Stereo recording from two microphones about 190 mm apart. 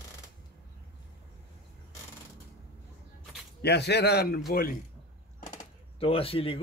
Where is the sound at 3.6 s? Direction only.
60° left (ahead or behind).